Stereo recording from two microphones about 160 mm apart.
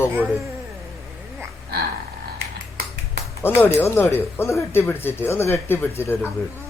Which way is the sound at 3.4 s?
15° left (ahead or behind).